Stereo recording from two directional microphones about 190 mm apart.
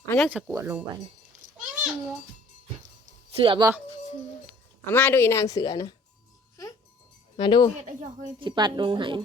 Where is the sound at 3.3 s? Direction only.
30° right (ahead or behind).